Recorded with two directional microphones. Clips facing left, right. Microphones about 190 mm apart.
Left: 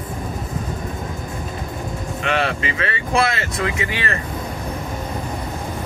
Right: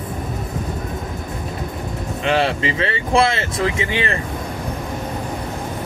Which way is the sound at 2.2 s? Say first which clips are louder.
Right 3 dB; 30° right (ahead or behind).